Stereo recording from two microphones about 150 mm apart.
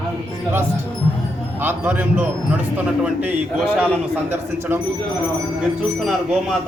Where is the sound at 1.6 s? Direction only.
15° right (ahead or behind).